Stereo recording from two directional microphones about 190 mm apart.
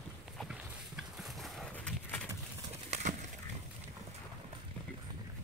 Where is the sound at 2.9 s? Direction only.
40° right (ahead or behind).